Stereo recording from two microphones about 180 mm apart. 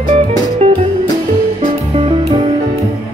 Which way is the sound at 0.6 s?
35° right (ahead or behind).